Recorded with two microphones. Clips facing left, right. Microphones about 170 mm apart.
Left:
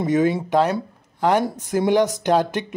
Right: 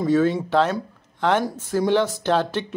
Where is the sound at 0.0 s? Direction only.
15° left (ahead or behind).